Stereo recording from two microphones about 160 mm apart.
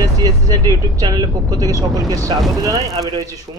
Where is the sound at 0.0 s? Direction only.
20° right (ahead or behind).